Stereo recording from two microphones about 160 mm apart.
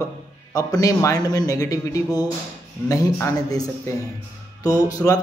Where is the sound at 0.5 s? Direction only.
20° left (ahead or behind).